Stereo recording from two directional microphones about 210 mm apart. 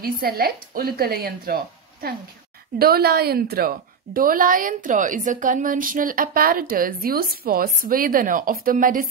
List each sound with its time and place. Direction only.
0.0 s a woman's voice: 45° right (ahead or behind)